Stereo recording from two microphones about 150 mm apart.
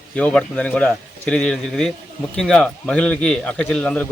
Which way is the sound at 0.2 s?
5° left (ahead or behind).